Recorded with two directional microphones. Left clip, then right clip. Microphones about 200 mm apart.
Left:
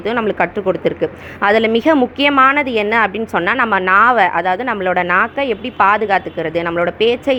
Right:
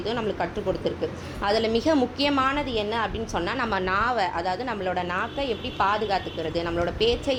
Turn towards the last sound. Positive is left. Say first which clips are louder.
# left 9 dB
turn(degrees=30)  # may be behind; listen again after turning